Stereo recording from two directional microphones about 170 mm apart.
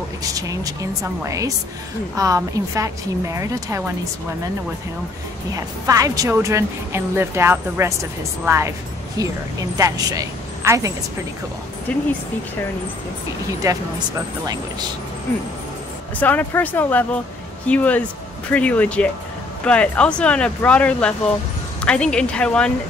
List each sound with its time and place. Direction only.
0.4 s a woman's voice: 20° right (ahead or behind)
5.9 s a woman's voice: 20° right (ahead or behind)
11.9 s speech: 10° left (ahead or behind)
13.6 s a woman's voice: 20° right (ahead or behind)
16.2 s speech: 10° left (ahead or behind)